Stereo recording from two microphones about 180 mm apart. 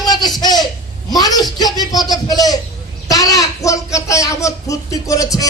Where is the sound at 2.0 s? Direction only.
20° left (ahead or behind).